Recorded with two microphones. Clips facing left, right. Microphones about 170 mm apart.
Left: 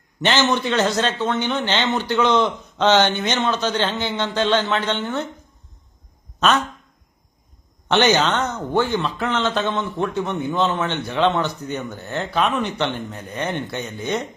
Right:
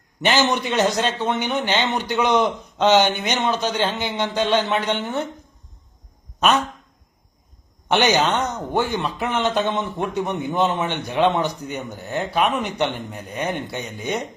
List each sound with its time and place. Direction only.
0.2 s speech: 15° right (ahead or behind)
7.9 s speech: 10° right (ahead or behind)